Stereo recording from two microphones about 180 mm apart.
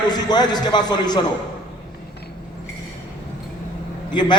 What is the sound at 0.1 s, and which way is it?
A man's voice, 25° left (ahead or behind).